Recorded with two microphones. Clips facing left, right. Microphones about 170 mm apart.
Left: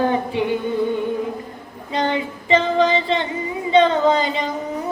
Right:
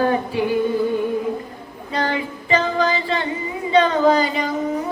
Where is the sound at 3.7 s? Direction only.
25° left (ahead or behind).